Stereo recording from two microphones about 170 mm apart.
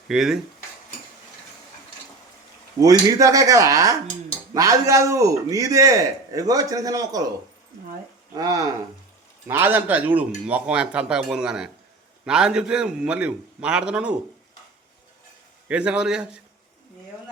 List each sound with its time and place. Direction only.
0.1 s a man's voice: 5° right (ahead or behind)
2.8 s a man's voice: 20° right (ahead or behind)
8.4 s a man's voice: 20° right (ahead or behind)
15.7 s a man's voice: 5° right (ahead or behind)